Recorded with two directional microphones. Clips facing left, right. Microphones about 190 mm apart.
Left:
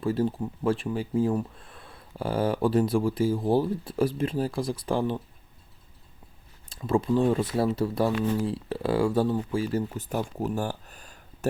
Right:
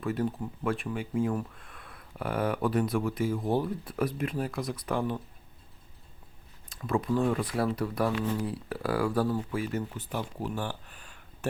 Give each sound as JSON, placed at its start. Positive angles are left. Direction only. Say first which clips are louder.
{"t": 0.0, "sound": "speech", "louder": "left 4 dB", "side_deg": 30}
{"t": 6.7, "sound": "speech", "louder": "left 4 dB", "side_deg": 30}